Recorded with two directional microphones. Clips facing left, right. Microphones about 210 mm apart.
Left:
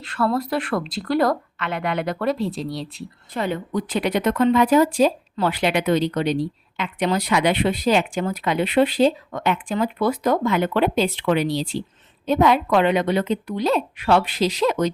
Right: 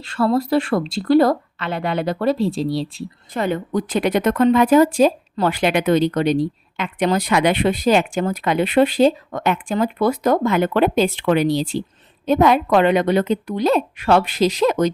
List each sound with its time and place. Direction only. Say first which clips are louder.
0.0 s speech: right 4 dB; 25° right (ahead or behind)
3.3 s speech: right 3 dB; 45° right (ahead or behind)